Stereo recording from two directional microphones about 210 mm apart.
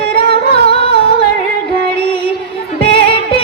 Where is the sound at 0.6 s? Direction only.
25° left (ahead or behind).